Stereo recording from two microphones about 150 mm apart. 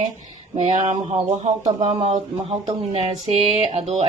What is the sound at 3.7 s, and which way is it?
Speech, 45° right (ahead or behind).